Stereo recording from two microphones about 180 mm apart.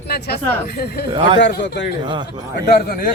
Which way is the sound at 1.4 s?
80° left.